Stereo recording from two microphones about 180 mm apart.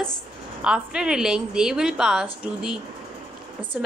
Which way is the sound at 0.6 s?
5° right (ahead or behind).